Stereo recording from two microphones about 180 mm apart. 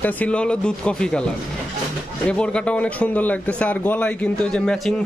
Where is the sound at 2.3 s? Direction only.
5° left (ahead or behind).